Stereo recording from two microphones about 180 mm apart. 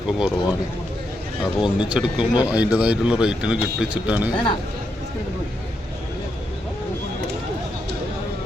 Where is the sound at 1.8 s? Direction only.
5° right (ahead or behind).